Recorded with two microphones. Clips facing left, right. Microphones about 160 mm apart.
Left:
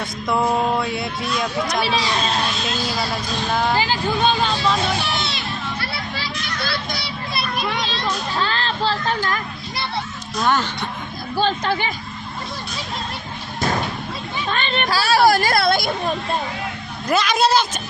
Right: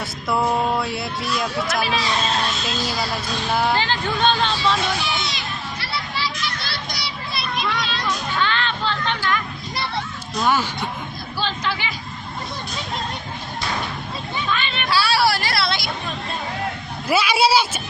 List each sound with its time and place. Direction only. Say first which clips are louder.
0.0 s speech: left 1 dB; 5° right (ahead or behind)
3.5 s speech: even; 5° right (ahead or behind)
3.8 s speech: left 2 dB; 10° left (ahead or behind)
4.9 s children playing: left 2 dB; 60° left (ahead or behind)
7.7 s music: left 1 dB; 25° left (ahead or behind)
10.4 s speech: even; 10° right (ahead or behind)
11.3 s speech: left 6 dB; 50° left (ahead or behind)
14.5 s speech: left 1 dB; 45° left (ahead or behind)
17.1 s speech: even; 10° right (ahead or behind)